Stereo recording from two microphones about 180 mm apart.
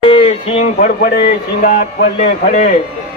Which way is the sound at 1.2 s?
55° left (ahead or behind).